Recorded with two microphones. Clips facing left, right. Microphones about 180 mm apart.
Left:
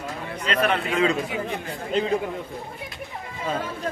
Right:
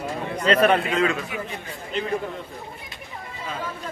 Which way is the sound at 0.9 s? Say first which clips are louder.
Left 1 dB; 20° left (ahead or behind).